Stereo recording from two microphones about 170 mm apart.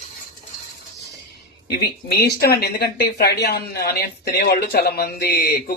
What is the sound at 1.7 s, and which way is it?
Speech, 70° left (ahead or behind).